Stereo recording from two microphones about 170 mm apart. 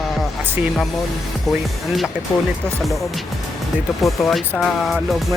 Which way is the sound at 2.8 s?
Centre (ahead or behind).